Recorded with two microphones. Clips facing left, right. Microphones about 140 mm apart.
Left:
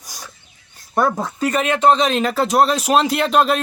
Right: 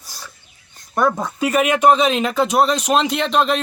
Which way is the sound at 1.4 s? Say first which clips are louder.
Right 2 dB; 10° right (ahead or behind).